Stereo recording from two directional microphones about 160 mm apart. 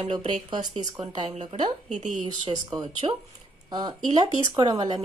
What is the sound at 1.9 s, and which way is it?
Speech, 50° right (ahead or behind).